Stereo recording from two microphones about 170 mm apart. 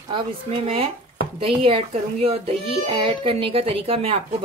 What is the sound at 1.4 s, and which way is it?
A child's voice, 35° right (ahead or behind).